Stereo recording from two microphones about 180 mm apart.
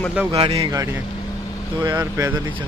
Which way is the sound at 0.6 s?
20° right (ahead or behind).